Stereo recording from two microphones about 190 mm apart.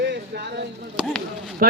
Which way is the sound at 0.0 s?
65° right (ahead or behind).